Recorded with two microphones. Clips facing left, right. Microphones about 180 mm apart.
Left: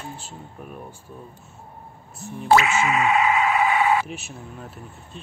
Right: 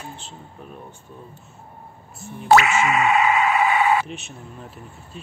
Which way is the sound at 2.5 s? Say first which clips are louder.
Right 2 dB; 70° right (ahead or behind).